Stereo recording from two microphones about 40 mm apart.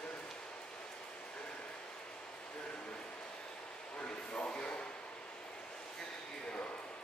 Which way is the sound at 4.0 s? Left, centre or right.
Left.